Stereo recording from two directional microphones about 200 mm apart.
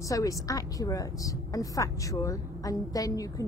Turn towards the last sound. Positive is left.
turn(degrees=15)  # may be behind; listen again after turning